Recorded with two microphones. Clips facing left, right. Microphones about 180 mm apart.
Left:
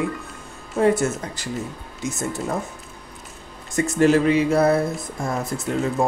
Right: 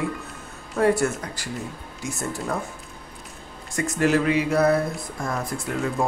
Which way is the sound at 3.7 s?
25° left (ahead or behind).